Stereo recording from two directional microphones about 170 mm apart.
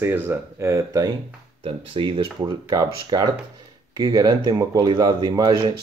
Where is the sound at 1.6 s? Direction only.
30° right (ahead or behind).